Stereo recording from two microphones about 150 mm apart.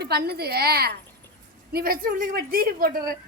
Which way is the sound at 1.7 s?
75° right (ahead or behind).